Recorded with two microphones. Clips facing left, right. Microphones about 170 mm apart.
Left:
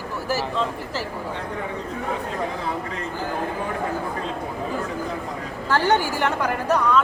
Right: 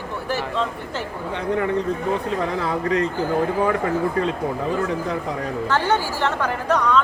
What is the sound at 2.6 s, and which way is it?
Speech, 80° right.